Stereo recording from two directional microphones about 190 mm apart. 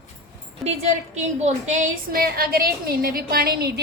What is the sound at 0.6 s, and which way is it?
A woman's voice, 35° right (ahead or behind).